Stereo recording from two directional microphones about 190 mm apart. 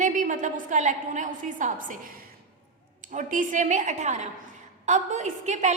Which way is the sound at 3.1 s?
45° right (ahead or behind).